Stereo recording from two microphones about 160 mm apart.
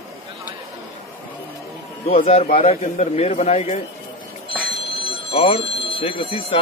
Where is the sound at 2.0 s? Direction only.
40° left (ahead or behind).